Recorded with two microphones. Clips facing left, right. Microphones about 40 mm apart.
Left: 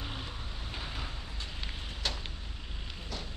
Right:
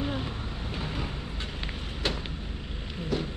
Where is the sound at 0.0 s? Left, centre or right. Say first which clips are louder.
Right 9 dB; centre.